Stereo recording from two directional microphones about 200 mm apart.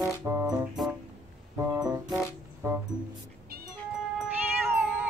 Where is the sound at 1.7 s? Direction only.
5° right (ahead or behind).